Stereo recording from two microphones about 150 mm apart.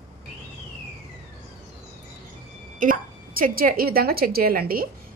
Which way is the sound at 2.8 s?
65° right (ahead or behind).